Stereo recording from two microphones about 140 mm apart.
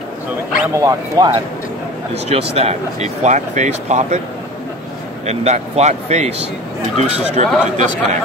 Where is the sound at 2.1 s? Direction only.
45° right (ahead or behind).